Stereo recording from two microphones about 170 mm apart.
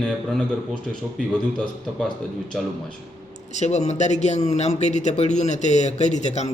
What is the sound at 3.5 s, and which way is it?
Speech, 40° left (ahead or behind).